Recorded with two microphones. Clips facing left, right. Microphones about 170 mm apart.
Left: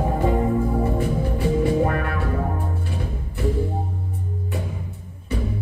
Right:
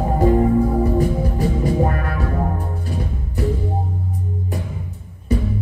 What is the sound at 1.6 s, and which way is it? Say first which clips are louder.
Music: even; 40° right (ahead or behind).